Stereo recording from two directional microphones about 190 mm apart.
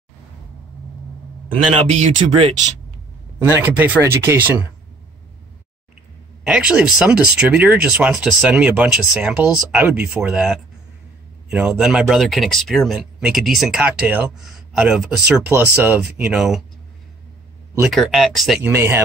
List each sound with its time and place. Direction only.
1.5 s speech: 30° right (ahead or behind)
3.3 s speech: 15° right (ahead or behind)
6.4 s speech: 5° right (ahead or behind)
17.9 s speech: centre (ahead or behind)
18.7 s speech: 10° right (ahead or behind)